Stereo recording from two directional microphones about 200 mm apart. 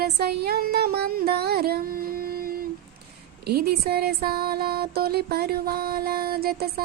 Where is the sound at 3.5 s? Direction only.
50° right (ahead or behind).